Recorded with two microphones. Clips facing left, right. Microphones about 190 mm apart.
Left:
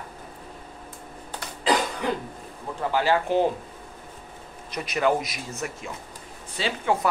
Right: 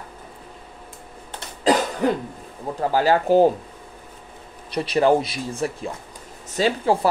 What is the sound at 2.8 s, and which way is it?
Speech, 40° right (ahead or behind).